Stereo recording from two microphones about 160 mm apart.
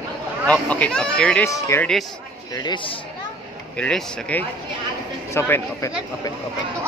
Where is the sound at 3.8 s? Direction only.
5° left (ahead or behind).